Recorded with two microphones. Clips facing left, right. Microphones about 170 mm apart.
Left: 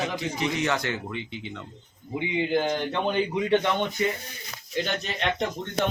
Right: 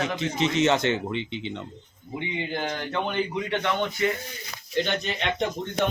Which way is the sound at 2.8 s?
15° left (ahead or behind).